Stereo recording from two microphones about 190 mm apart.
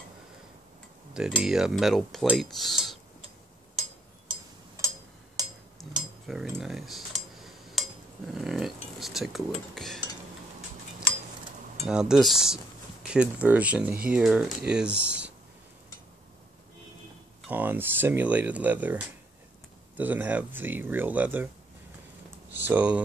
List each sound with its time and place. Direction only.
1.1 s speech: 5° right (ahead or behind)
4.8 s a sound: 20° right (ahead or behind)
6.2 s cutlery: centre (ahead or behind)
8.3 s speech: centre (ahead or behind)
11.9 s speech: 5° right (ahead or behind)
17.5 s speech: 10° right (ahead or behind)
22.5 s speech: 10° right (ahead or behind)